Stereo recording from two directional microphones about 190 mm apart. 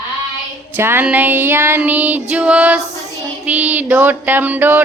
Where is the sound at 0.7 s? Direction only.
10° right (ahead or behind).